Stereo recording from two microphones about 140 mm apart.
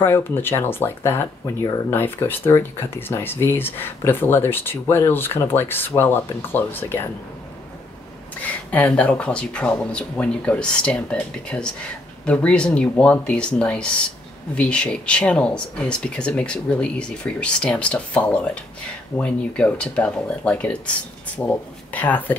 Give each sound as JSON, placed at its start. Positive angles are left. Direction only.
{"t": 0.0, "sound": "speech", "side_deg": 15}
{"t": 8.7, "sound": "speech", "side_deg": 10}